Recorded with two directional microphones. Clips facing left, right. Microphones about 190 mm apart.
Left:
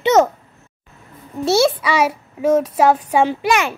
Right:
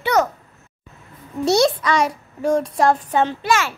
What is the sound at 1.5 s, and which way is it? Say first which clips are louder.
A child's voice: left 1 dB; 5° left (ahead or behind).